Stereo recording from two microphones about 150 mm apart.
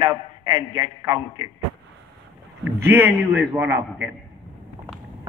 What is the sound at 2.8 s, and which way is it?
A man's voice, 15° right (ahead or behind).